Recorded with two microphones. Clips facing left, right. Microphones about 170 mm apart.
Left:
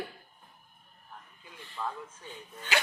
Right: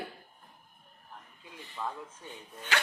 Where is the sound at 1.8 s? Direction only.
5° right (ahead or behind).